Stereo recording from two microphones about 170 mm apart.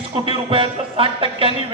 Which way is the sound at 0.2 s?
30° right (ahead or behind).